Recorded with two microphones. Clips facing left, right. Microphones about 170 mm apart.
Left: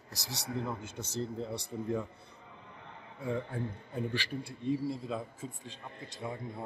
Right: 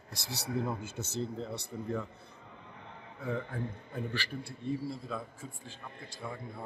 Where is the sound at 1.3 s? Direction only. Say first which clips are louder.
Left 1 dB; 10° left (ahead or behind).